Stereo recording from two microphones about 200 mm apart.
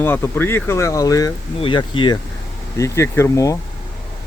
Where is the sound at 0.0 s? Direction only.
10° left (ahead or behind).